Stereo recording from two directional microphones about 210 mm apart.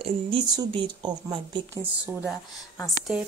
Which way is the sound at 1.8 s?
10° right (ahead or behind).